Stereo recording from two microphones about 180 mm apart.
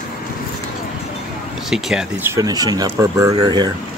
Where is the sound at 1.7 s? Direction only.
5° right (ahead or behind); by 3.7 s 20° right (ahead or behind).